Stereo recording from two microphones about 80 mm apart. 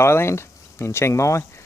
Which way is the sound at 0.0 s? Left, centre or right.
Left.